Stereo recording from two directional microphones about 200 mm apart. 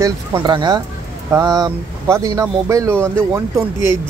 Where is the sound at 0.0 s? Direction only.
20° right (ahead or behind).